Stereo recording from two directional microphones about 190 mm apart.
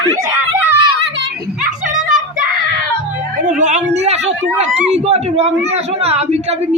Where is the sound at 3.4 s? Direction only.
40° right (ahead or behind).